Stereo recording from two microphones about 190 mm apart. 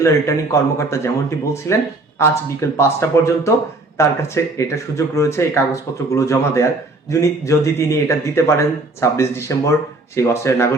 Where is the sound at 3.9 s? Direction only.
15° left (ahead or behind).